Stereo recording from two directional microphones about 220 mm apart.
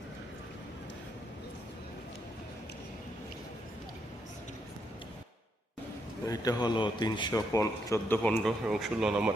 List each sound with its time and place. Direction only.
6.2 s a man's voice: 15° left (ahead or behind)
8.6 s speech: 5° right (ahead or behind)